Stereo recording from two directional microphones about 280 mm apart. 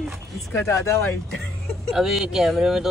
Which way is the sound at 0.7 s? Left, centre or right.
Centre.